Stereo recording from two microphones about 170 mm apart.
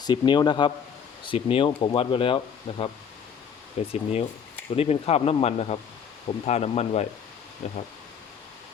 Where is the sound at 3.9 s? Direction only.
40° left (ahead or behind).